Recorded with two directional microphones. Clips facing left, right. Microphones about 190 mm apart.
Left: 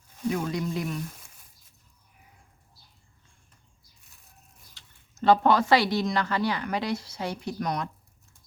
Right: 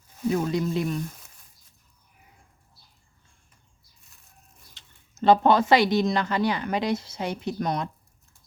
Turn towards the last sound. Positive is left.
turn(degrees=-25)  # may be behind; listen again after turning